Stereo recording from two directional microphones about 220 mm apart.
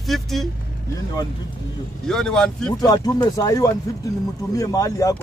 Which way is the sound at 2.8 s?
15° left (ahead or behind).